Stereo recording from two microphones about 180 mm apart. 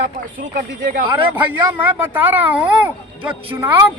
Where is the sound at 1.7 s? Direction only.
10° right (ahead or behind).